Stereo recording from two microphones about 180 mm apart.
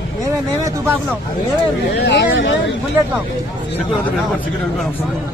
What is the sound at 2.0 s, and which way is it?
Speech, 70° left (ahead or behind).